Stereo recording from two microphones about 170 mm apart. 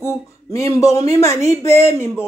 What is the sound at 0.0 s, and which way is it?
Speech, 15° left (ahead or behind).